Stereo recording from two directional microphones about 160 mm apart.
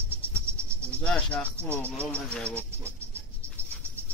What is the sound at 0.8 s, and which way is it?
Speech, 5° left (ahead or behind).